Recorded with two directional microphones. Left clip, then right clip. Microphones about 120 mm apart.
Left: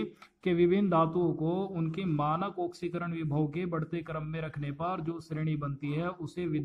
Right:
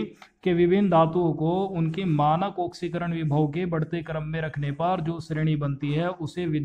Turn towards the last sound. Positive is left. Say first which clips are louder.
# right 5 dB
turn(degrees=-15)  # may be behind; listen again after turning